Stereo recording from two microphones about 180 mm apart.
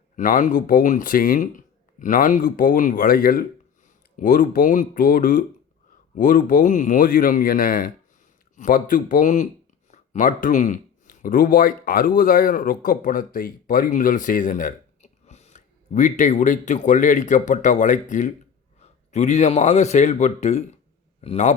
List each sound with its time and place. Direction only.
0.2 s a man's voice: 45° left (ahead or behind)